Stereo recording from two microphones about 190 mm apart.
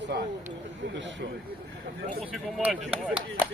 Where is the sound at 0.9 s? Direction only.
70° right (ahead or behind).